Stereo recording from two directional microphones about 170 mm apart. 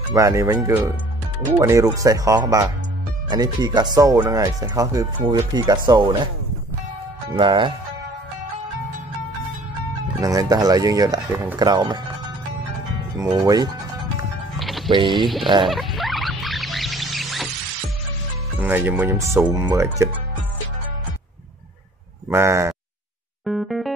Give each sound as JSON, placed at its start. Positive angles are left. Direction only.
{"t": 0.1, "sound": "speech", "side_deg": -15}
{"t": 7.3, "sound": "speech", "side_deg": -30}
{"t": 10.2, "sound": "speech", "side_deg": -20}
{"t": 13.3, "sound": "speech", "side_deg": -25}
{"t": 14.6, "sound": "music", "side_deg": 0}
{"t": 14.9, "sound": "speech", "side_deg": -30}
{"t": 15.7, "sound": "music", "side_deg": 0}
{"t": 18.6, "sound": "speech", "side_deg": -10}
{"t": 22.3, "sound": "speech", "side_deg": -15}
{"t": 23.4, "sound": "music", "side_deg": 0}